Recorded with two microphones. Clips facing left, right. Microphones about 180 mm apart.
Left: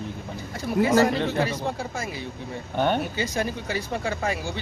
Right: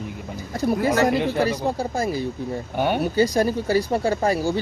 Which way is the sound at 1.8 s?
35° right (ahead or behind).